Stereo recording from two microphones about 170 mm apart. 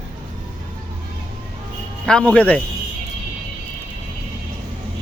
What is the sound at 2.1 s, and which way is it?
Speech, 5° left (ahead or behind).